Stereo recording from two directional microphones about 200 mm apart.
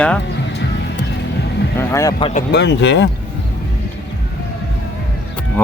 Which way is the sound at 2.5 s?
60° left (ahead or behind).